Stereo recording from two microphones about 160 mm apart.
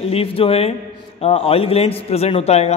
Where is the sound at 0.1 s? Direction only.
35° left (ahead or behind).